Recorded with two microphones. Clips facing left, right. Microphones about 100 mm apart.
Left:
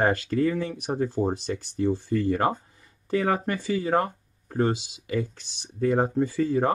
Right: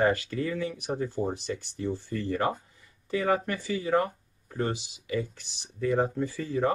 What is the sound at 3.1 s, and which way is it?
Speech, 50° left (ahead or behind).